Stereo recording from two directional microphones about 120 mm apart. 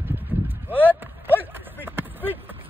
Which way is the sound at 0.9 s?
15° right (ahead or behind).